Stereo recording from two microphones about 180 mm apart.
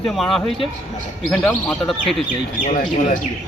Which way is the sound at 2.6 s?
45° left (ahead or behind).